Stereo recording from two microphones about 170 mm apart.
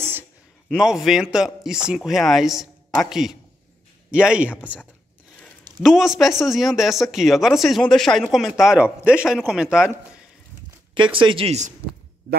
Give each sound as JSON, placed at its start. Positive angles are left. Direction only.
{"t": 0.7, "sound": "speech", "side_deg": 0}
{"t": 11.0, "sound": "speech", "side_deg": -30}